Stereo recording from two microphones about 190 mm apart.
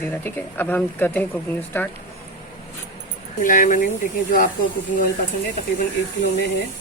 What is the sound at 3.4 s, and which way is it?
Speech, 45° left (ahead or behind).